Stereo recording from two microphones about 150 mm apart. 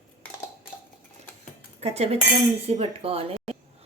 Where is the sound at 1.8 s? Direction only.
45° right (ahead or behind).